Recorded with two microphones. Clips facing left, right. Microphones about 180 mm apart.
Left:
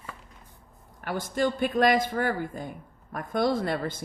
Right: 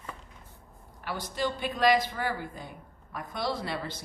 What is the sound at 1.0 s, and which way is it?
Speech, 50° left (ahead or behind).